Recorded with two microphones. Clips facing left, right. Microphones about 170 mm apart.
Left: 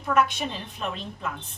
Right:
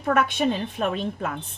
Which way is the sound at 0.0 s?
55° right (ahead or behind).